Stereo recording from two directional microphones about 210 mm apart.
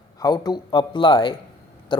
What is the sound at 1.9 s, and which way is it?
Owl, 20° left (ahead or behind).